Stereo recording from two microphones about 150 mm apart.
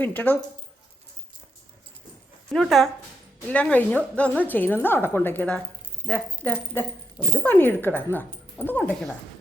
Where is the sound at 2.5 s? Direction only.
Centre (ahead or behind).